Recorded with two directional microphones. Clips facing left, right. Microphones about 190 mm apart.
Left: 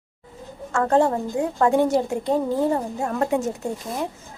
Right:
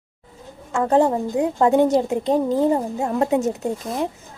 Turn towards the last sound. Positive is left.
turn(degrees=-20)  # may be behind; listen again after turning